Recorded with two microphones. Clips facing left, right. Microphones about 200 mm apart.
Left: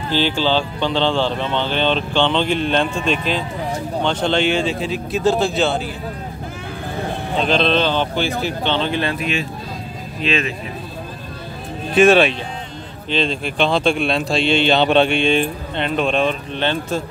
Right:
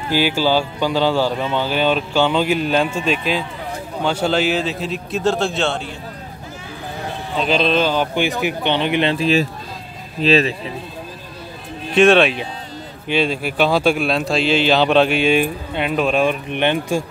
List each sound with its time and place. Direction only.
0.1 s a man's voice: 10° right (ahead or behind)
7.3 s speech: 5° right (ahead or behind)
9.1 s speech: 35° right (ahead or behind)
11.9 s a man's voice: centre (ahead or behind); by 17.0 s 15° right (ahead or behind)